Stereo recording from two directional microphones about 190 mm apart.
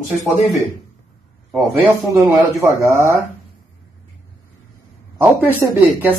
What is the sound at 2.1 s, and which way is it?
Speech, 15° right (ahead or behind).